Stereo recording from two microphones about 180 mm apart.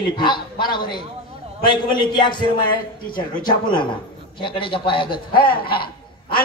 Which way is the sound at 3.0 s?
50° left (ahead or behind).